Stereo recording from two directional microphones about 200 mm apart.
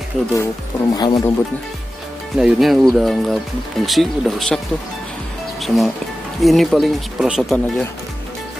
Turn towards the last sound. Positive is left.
turn(degrees=0)  # may be behind; listen again after turning